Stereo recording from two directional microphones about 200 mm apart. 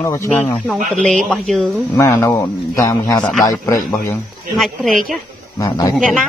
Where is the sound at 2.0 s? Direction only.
15° left (ahead or behind).